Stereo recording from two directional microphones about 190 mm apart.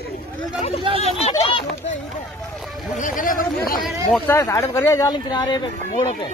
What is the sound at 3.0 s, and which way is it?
Speech, 45° left (ahead or behind).